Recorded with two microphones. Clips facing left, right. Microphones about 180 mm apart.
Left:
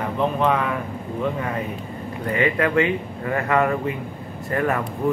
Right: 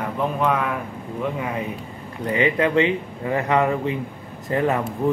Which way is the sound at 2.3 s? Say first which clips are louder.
Right 1 dB; 20° right (ahead or behind).